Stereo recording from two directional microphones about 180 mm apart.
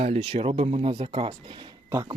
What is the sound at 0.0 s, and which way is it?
Speech, 30° right (ahead or behind).